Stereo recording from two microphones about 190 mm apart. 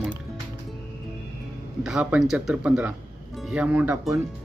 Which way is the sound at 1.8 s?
5° right (ahead or behind).